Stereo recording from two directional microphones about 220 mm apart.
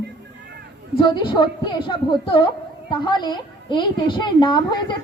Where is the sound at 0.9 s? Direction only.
20° left (ahead or behind).